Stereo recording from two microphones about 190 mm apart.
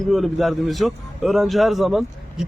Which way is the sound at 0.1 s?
Centre (ahead or behind).